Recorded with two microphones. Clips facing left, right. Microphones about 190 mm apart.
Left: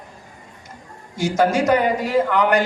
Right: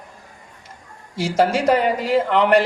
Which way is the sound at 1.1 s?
30° right (ahead or behind).